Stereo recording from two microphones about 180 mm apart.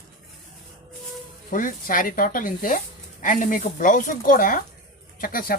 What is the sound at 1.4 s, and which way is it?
Speech, 50° left (ahead or behind).